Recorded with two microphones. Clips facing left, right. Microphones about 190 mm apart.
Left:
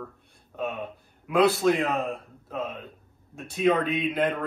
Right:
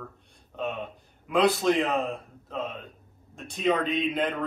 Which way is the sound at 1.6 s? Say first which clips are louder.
Left 1 dB; centre (ahead or behind).